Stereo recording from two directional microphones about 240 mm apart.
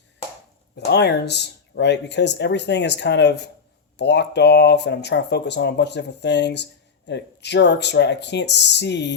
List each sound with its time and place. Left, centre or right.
0.9 s speech: left